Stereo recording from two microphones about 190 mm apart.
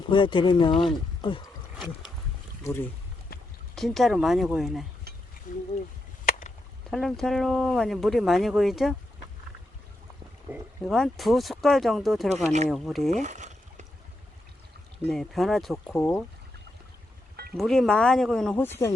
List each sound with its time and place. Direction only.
0.1 s speech: 25° left (ahead or behind)
3.8 s speech: centre (ahead or behind)
5.5 s speech: 45° left (ahead or behind)
6.9 s speech: centre (ahead or behind)
10.5 s speech: centre (ahead or behind)
13.2 s a sound: 40° right (ahead or behind)
15.0 s speech: centre (ahead or behind)
17.6 s speech: centre (ahead or behind)